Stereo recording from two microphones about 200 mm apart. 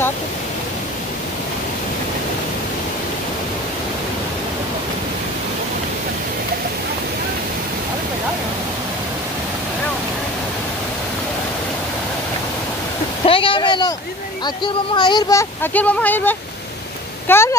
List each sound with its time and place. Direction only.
13.2 s waterfall: 25° left (ahead or behind)
14.4 s speech: 25° left (ahead or behind)